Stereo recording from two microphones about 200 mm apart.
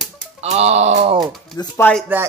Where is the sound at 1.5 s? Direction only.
20° left (ahead or behind).